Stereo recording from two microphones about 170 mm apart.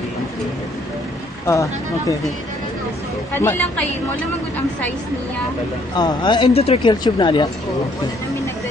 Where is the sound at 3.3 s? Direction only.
10° left (ahead or behind).